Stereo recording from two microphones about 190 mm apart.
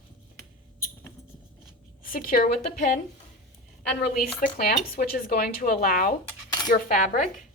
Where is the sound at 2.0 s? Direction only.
50° left (ahead or behind).